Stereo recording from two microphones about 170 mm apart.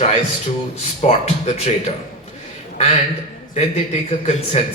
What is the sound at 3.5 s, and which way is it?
A man's voice, 40° left (ahead or behind).